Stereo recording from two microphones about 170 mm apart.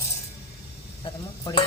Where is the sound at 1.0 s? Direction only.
25° left (ahead or behind).